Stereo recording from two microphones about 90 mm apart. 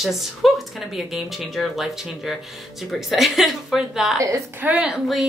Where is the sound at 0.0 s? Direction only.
Centre (ahead or behind).